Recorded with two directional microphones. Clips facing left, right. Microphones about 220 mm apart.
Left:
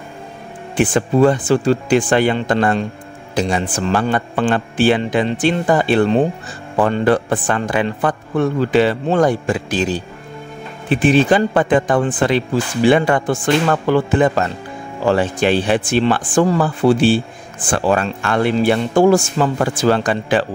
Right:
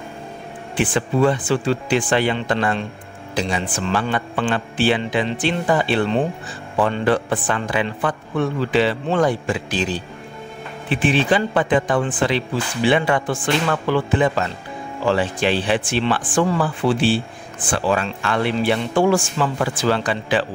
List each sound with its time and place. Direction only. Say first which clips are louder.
0.7 s speech: left 5 dB; 45° left (ahead or behind)